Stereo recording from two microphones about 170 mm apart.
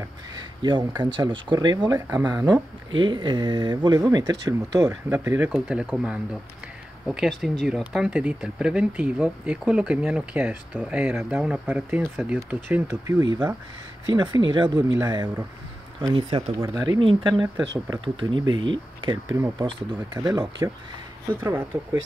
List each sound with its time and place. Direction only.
0.6 s speech: 25° right (ahead or behind)
16.6 s speech: 20° right (ahead or behind)